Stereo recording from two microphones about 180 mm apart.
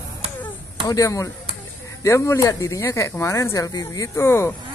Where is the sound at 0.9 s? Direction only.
20° left (ahead or behind).